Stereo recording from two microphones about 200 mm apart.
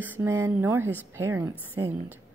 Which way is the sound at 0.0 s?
10° right (ahead or behind).